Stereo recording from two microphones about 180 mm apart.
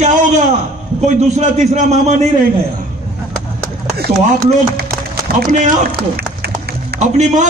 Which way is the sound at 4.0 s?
55° right (ahead or behind).